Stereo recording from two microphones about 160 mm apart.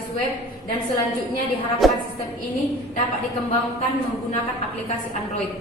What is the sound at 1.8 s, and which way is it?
Speech, centre (ahead or behind).